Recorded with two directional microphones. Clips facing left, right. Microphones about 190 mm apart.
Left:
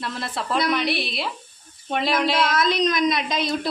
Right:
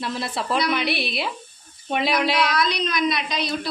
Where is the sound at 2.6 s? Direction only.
45° left (ahead or behind).